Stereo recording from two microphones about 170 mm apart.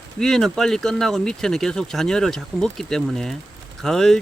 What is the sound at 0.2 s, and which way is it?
Speech, 5° left (ahead or behind).